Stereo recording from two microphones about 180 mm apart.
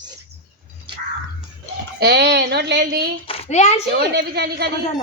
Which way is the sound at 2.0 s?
65° right (ahead or behind).